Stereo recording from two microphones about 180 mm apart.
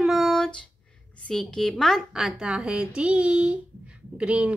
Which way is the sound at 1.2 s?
Centre (ahead or behind).